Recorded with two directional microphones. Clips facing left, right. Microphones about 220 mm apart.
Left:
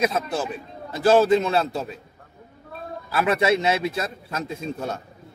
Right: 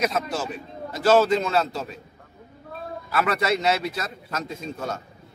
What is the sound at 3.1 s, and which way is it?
A man's voice, 30° left (ahead or behind).